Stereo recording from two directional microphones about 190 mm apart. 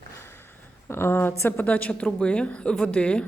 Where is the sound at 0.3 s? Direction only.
10° left (ahead or behind).